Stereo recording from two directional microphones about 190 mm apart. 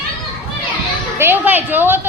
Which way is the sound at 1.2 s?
10° right (ahead or behind).